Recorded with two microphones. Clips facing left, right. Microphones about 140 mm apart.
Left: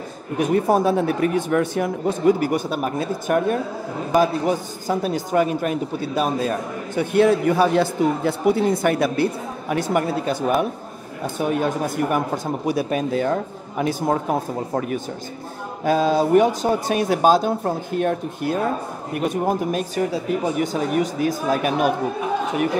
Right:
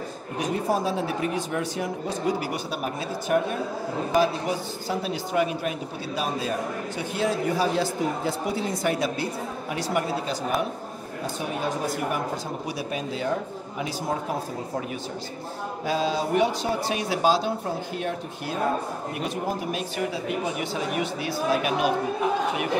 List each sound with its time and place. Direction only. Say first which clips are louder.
0.4 s speech: left 7 dB; 55° left (ahead or behind)
7.0 s speech: left 10 dB; 60° left (ahead or behind)
11.3 s speech: left 8 dB; 55° left (ahead or behind)
15.8 s speech: left 8 dB; 50° left (ahead or behind)